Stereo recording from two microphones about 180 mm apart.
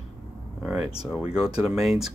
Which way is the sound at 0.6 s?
5° right (ahead or behind).